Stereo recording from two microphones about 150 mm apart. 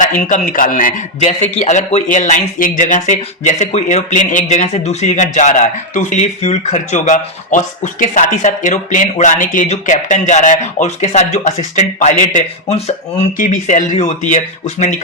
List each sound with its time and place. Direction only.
0.2 s speech: 60° left (ahead or behind)
1.4 s speech: 10° left (ahead or behind)
1.6 s speech: 50° left (ahead or behind)